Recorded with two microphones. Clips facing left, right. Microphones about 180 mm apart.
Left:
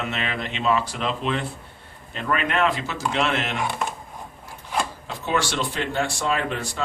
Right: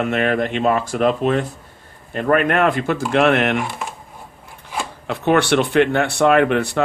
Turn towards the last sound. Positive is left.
turn(degrees=-65)  # may be behind; listen again after turning